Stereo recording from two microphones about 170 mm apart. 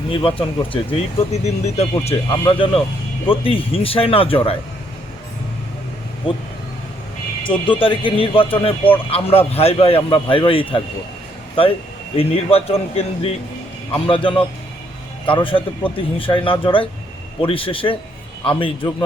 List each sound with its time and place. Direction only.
0.1 s speech: 30° left (ahead or behind)
7.4 s speech: 30° left (ahead or behind)
12.1 s speech: 35° left (ahead or behind)